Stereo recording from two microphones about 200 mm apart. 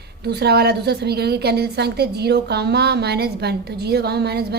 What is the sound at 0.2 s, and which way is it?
A woman's voice, 55° right (ahead or behind).